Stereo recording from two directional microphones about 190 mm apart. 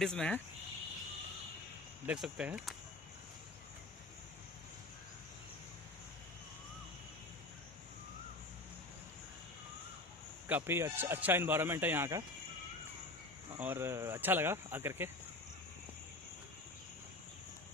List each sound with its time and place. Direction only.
0.0 s speech: 5° left (ahead or behind)
2.0 s speech: 5° right (ahead or behind)
10.5 s speech: 10° right (ahead or behind)
13.6 s speech: 10° right (ahead or behind)